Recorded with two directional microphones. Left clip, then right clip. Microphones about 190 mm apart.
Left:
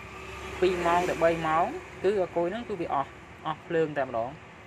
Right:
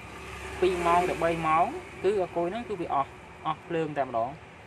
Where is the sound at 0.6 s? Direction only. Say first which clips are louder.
Right 1 dB; centre (ahead or behind).